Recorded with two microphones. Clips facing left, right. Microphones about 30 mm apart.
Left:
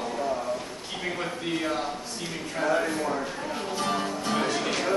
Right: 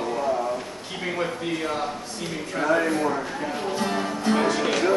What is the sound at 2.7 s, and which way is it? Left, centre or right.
Speech, right.